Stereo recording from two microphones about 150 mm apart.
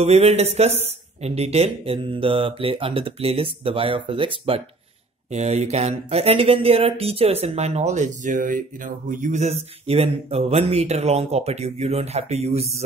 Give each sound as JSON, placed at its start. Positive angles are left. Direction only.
{"t": 0.0, "sound": "speech", "side_deg": -45}
{"t": 5.3, "sound": "speech", "side_deg": -45}